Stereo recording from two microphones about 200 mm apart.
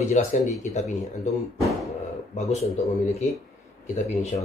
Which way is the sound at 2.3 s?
35° left (ahead or behind).